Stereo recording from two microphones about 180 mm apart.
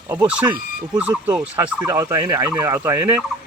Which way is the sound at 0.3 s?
5° right (ahead or behind).